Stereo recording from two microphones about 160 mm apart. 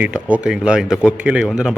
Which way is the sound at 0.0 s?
10° right (ahead or behind).